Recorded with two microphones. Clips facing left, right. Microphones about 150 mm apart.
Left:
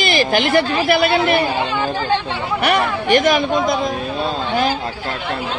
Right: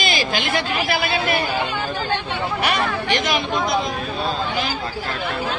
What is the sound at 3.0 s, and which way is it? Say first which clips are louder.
Speech: left 7 dB; 50° left (ahead or behind).